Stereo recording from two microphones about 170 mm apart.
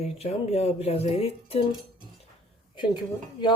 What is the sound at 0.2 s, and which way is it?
Speech, 35° left (ahead or behind).